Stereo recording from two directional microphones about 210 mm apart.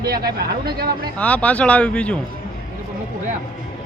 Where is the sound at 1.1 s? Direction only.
5° left (ahead or behind).